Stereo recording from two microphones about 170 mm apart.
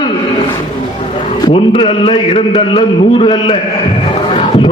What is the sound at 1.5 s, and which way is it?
A man's voice, 35° left (ahead or behind).